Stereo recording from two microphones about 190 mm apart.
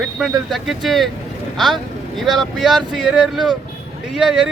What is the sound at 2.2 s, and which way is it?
Speech, centre (ahead or behind).